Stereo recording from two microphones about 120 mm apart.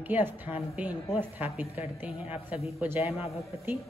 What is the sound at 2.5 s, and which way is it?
Speech, 10° right (ahead or behind).